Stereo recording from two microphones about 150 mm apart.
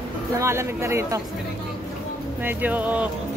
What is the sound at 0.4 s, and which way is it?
Speech, 15° right (ahead or behind).